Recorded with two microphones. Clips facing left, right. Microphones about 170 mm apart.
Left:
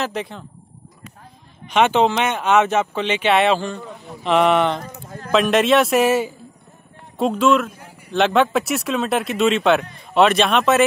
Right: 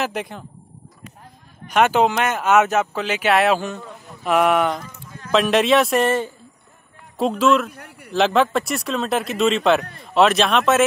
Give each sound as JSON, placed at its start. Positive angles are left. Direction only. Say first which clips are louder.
{"t": 0.0, "sound": "speech", "louder": "even", "side_deg": -5}
{"t": 1.7, "sound": "speech", "louder": "left 1 dB", "side_deg": -5}
{"t": 4.8, "sound": "a sound", "louder": "left 5 dB", "side_deg": 50}
{"t": 5.3, "sound": "speech", "louder": "left 1 dB", "side_deg": 0}
{"t": 7.7, "sound": "a sound", "louder": "right 2 dB", "side_deg": -65}
{"t": 8.1, "sound": "speech", "louder": "left 1 dB", "side_deg": 0}